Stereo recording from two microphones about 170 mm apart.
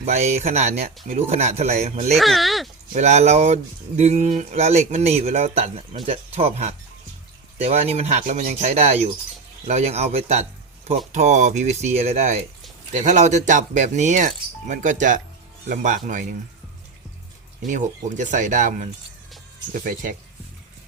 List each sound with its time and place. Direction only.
0.0 s speech: 40° right (ahead or behind)
2.1 s speech: centre (ahead or behind)
2.9 s speech: 40° right (ahead or behind)
17.7 s speech: 45° right (ahead or behind)